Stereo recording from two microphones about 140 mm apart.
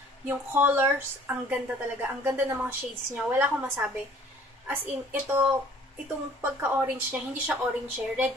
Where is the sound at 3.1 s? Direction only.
15° right (ahead or behind).